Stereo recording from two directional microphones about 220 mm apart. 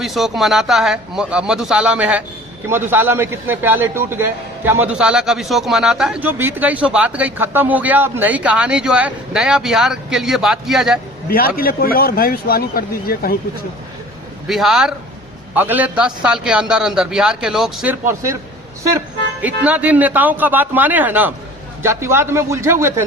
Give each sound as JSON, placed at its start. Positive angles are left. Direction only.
{"t": 0.0, "sound": "a man's voice", "side_deg": 0}
{"t": 11.3, "sound": "speech", "side_deg": 40}
{"t": 14.4, "sound": "a man's voice", "side_deg": 0}